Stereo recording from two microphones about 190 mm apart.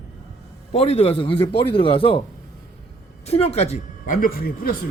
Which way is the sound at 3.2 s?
35° left (ahead or behind).